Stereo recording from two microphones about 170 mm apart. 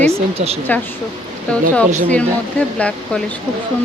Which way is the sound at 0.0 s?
35° right (ahead or behind).